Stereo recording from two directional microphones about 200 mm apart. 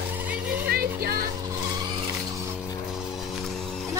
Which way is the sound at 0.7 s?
50° right (ahead or behind).